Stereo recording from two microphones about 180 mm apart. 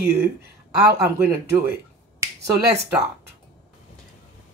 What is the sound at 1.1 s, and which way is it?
Speech, 10° right (ahead or behind).